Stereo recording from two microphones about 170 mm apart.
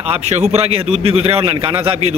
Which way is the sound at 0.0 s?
35° right (ahead or behind).